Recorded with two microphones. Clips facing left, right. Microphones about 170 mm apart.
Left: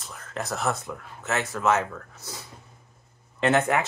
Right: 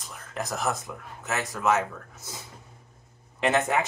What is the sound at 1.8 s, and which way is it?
Speech, 20° right (ahead or behind).